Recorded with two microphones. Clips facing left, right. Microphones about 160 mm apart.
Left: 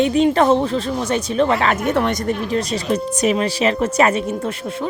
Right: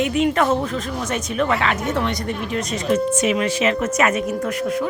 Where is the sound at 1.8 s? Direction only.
60° left (ahead or behind).